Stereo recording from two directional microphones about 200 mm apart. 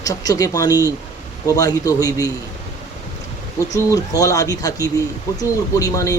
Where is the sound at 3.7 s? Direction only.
15° left (ahead or behind).